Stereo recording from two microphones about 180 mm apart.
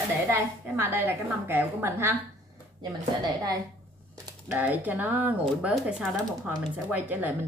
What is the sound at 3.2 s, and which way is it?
Speech, 20° right (ahead or behind).